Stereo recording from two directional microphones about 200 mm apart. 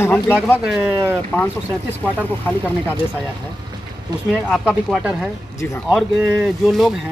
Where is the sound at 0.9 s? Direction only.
15° right (ahead or behind).